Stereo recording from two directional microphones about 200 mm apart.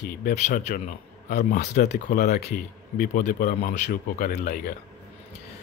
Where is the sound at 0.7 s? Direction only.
40° left (ahead or behind).